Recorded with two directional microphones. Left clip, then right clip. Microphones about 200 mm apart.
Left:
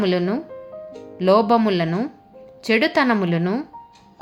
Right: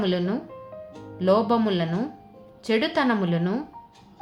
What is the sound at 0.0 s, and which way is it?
A woman's voice, 30° left (ahead or behind).